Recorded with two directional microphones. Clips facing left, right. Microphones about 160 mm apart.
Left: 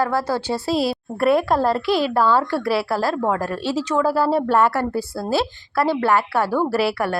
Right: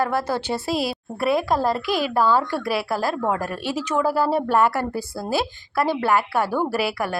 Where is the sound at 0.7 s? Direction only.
35° left (ahead or behind).